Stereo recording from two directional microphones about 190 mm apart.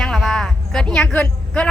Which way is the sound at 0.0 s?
5° left (ahead or behind).